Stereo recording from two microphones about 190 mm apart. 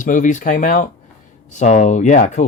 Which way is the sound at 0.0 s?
40° left (ahead or behind).